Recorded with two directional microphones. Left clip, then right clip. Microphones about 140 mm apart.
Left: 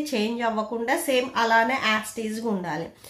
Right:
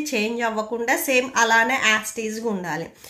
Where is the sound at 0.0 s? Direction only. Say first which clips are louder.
Right 2 dB; 10° right (ahead or behind).